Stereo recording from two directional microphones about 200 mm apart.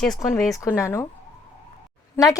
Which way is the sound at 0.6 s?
15° left (ahead or behind).